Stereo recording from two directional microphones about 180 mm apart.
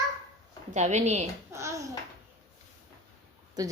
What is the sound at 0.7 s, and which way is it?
Speech, 40° right (ahead or behind).